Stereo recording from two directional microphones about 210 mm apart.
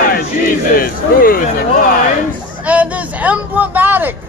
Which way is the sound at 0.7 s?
45° left (ahead or behind).